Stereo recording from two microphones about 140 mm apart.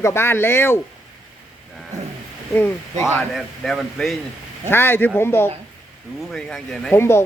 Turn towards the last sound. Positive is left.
turn(degrees=20)  # may be behind; listen again after turning